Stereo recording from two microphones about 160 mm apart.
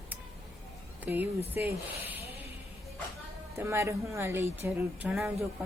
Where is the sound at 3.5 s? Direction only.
15° right (ahead or behind).